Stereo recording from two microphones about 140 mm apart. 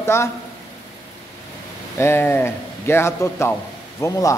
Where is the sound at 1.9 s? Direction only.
20° left (ahead or behind).